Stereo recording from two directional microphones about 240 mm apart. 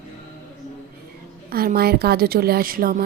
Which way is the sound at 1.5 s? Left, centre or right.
Right.